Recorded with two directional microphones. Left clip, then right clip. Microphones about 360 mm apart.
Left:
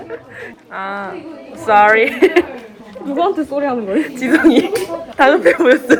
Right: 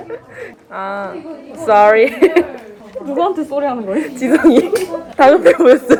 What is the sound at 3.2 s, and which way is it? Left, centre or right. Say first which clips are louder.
Speech: even; centre.